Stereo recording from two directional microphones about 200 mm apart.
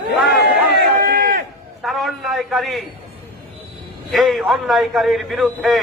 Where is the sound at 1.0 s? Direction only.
50° right (ahead or behind).